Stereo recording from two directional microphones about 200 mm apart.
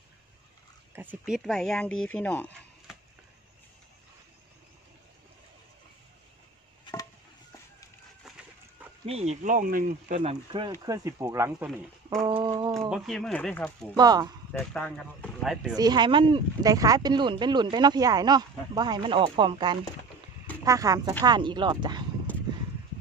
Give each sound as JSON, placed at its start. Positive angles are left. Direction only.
{"t": 0.9, "sound": "speech", "side_deg": -5}
{"t": 9.0, "sound": "speech", "side_deg": -30}
{"t": 10.2, "sound": "speech", "side_deg": -25}
{"t": 12.9, "sound": "speech", "side_deg": 0}
{"t": 13.9, "sound": "speech", "side_deg": -20}
{"t": 14.6, "sound": "speech", "side_deg": 5}
{"t": 15.7, "sound": "speech", "side_deg": -20}